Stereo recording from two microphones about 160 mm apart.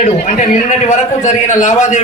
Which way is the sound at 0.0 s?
45° left (ahead or behind).